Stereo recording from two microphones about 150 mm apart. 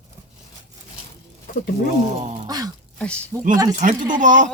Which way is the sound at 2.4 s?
25° right (ahead or behind).